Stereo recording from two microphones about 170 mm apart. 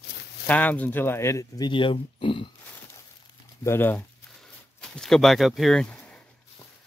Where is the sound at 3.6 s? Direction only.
15° left (ahead or behind).